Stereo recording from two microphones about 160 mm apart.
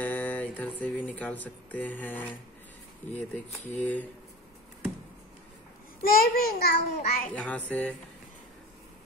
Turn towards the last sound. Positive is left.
turn(degrees=10)  # may be behind; listen again after turning